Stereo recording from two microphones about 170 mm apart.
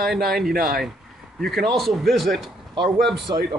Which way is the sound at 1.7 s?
Centre (ahead or behind).